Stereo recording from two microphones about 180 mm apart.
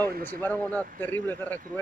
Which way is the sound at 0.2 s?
10° left (ahead or behind).